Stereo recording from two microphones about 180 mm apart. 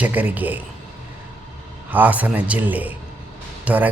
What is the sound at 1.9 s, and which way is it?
A man's voice, 10° right (ahead or behind).